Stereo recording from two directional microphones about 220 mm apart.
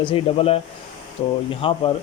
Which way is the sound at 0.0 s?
25° left (ahead or behind).